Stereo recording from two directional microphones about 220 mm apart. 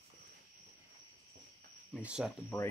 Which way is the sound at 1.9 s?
5° right (ahead or behind).